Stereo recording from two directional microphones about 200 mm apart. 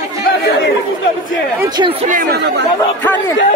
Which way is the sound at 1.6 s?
20° right (ahead or behind).